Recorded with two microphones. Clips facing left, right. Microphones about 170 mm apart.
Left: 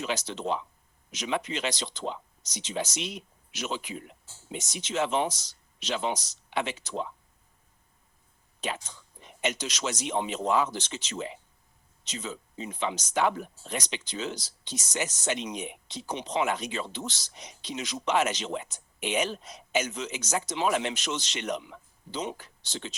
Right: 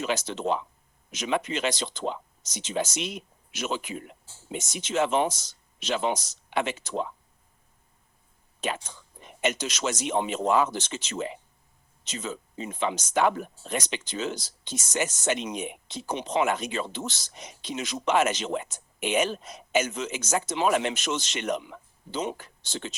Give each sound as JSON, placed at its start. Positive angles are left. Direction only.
{"t": 0.0, "sound": "speech", "side_deg": -50}
{"t": 8.6, "sound": "speech", "side_deg": -50}